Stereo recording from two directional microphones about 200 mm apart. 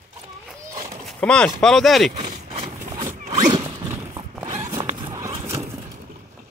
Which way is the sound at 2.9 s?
20° right (ahead or behind).